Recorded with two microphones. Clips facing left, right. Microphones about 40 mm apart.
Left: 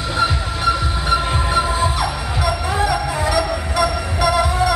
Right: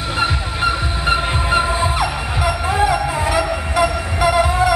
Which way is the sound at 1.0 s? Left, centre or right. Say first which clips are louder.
Right 1 dB; right.